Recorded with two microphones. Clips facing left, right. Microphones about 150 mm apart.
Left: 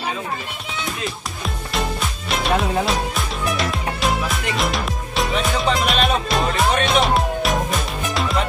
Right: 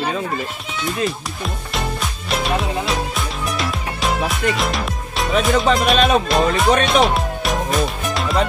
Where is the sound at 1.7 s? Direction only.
Centre (ahead or behind).